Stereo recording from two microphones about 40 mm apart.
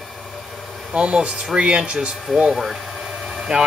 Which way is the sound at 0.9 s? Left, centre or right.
Right.